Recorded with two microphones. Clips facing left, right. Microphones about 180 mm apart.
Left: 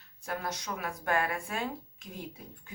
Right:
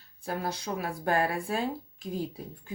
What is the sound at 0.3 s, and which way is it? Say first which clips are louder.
Speech: right 4 dB; 30° right (ahead or behind).